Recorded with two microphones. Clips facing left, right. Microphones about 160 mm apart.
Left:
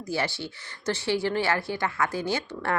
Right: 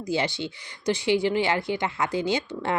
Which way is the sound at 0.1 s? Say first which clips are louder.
Right 3 dB; 20° right (ahead or behind).